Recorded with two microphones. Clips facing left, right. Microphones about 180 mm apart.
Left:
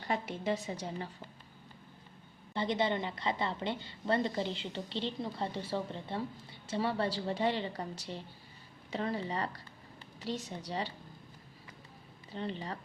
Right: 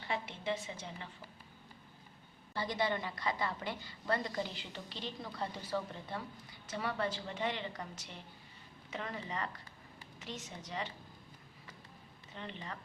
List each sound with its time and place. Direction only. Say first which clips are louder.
0.1 s a woman's voice: left 4 dB; 40° left (ahead or behind)
2.5 s a woman's voice: left 4 dB; 25° left (ahead or behind)
12.3 s a woman's voice: left 7 dB; 35° left (ahead or behind)